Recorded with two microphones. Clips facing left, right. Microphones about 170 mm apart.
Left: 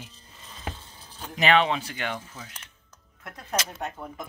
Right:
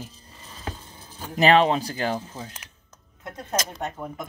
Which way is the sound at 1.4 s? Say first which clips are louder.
Right 4 dB; 40° right (ahead or behind).